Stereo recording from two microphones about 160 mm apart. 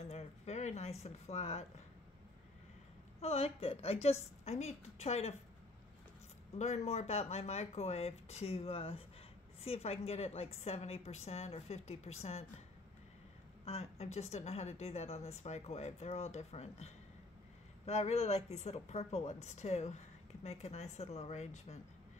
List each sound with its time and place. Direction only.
0.0 s speech: 40° left (ahead or behind)
3.2 s speech: 40° left (ahead or behind)
6.6 s speech: 45° left (ahead or behind)
13.7 s speech: 40° left (ahead or behind)